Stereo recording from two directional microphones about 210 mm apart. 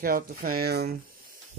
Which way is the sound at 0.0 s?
45° right (ahead or behind).